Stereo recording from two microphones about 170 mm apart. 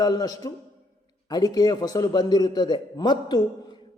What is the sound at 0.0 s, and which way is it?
A woman's voice, 20° left (ahead or behind).